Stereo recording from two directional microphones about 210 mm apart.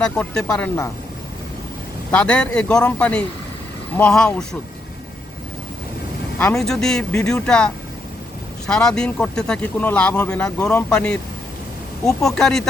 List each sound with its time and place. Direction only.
0.0 s speech: 5° left (ahead or behind)
2.0 s speech: 5° left (ahead or behind)
6.4 s speech: centre (ahead or behind)